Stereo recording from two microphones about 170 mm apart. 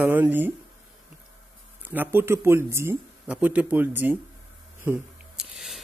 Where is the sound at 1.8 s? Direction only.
10° right (ahead or behind).